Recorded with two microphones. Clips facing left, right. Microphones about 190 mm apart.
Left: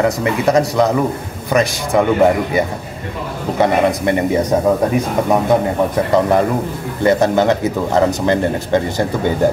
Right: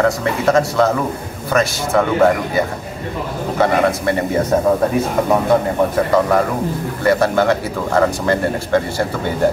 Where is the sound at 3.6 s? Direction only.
20° left (ahead or behind).